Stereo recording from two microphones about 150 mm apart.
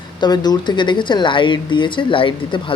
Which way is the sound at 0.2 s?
25° left (ahead or behind).